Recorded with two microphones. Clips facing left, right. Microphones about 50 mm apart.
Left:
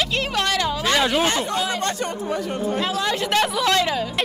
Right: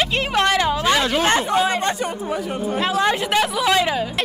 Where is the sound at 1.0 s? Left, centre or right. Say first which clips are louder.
Even; centre.